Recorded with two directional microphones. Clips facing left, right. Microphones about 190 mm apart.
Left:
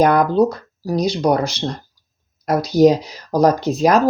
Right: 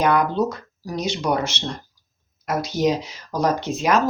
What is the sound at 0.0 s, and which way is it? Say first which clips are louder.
Speech: left 6 dB; 40° left (ahead or behind).